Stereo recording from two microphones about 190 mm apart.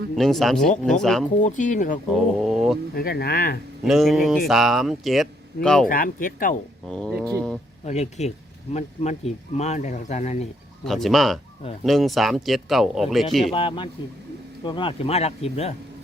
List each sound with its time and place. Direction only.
0.2 s speech: centre (ahead or behind)
1.4 s speech: 40° left (ahead or behind)
2.1 s speech: centre (ahead or behind)
2.9 s speech: 50° left (ahead or behind)
3.8 s speech: centre (ahead or behind)
5.9 s speech: 45° left (ahead or behind)
6.8 s speech: 5° left (ahead or behind)
7.9 s speech: 35° left (ahead or behind)
10.8 s speech: centre (ahead or behind)
13.5 s speech: 25° left (ahead or behind)